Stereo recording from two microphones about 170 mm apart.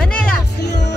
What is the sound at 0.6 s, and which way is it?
Music, 85° left.